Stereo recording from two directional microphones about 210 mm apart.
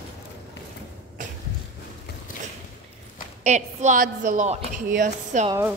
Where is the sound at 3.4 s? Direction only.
35° right (ahead or behind).